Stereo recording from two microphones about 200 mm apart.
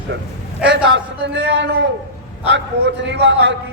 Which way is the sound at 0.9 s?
60° right (ahead or behind).